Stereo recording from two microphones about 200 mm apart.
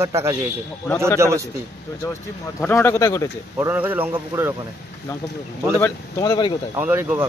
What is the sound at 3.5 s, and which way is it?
Speech, 10° right (ahead or behind).